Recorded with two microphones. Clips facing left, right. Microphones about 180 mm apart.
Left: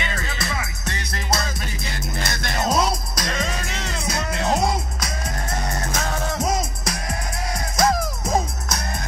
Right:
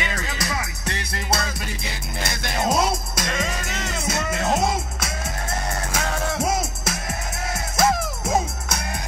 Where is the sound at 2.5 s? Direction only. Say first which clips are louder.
Even; 5° right (ahead or behind).